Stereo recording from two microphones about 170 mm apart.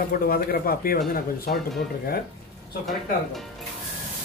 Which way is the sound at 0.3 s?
60° left (ahead or behind).